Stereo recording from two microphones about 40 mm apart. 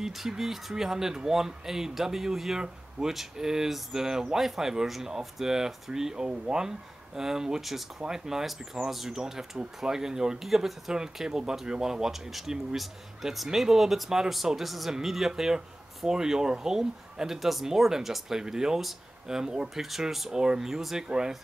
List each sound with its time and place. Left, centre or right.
0.0 s speech: centre
10.4 s speech: centre
10.9 s speech: centre